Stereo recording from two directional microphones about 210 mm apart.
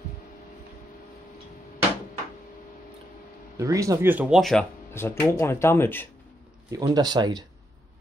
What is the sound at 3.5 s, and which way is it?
Speech, 15° right (ahead or behind).